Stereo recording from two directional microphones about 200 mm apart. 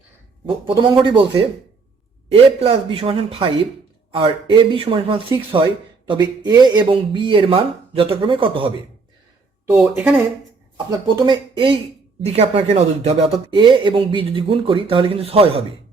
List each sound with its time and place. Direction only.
0.4 s speech: 25° right (ahead or behind)
9.6 s speech: 10° right (ahead or behind)
11.0 s speech: 25° right (ahead or behind)